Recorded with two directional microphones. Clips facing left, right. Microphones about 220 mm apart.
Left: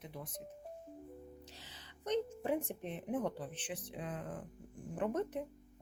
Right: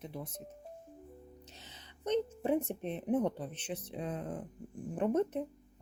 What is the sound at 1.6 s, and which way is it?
A woman's voice, 20° right (ahead or behind).